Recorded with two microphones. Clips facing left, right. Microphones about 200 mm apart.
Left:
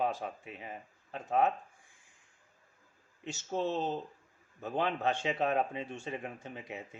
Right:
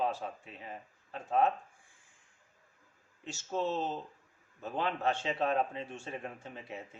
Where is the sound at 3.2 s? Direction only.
15° left (ahead or behind).